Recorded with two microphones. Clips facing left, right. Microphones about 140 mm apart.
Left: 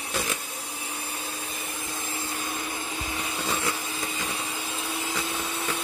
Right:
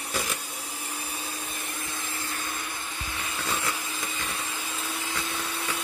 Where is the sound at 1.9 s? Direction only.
20° left (ahead or behind).